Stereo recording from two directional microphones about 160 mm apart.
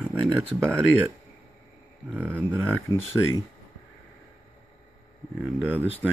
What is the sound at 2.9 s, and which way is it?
Speech, 25° left (ahead or behind).